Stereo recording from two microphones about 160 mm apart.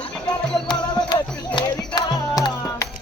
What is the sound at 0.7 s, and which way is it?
Music, 25° left (ahead or behind).